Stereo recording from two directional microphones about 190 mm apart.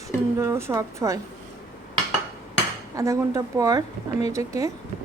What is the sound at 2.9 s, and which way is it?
A woman's voice, 15° right (ahead or behind).